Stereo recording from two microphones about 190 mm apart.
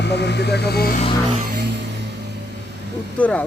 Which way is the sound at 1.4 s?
60° right (ahead or behind).